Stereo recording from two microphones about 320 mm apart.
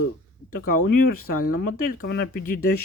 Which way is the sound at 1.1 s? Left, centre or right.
Left.